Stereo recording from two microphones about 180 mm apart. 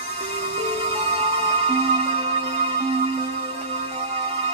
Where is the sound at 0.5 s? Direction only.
35° right (ahead or behind).